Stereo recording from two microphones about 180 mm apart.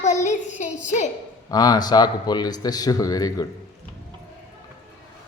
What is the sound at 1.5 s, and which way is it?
A man's voice, 20° left (ahead or behind).